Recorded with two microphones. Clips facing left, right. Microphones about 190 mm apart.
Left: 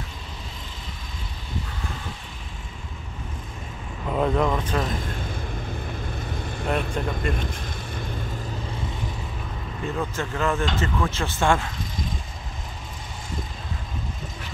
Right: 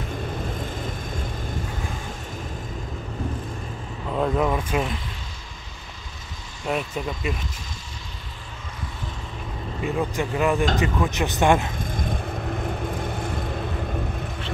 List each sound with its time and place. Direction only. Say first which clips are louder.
4.1 s speech: even; centre (ahead or behind)
6.7 s speech: even; 5° right (ahead or behind)
9.9 s speech: right 4 dB; 15° right (ahead or behind)